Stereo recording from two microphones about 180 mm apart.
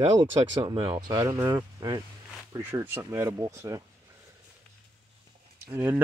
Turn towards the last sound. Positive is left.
turn(degrees=-10)  # may be behind; listen again after turning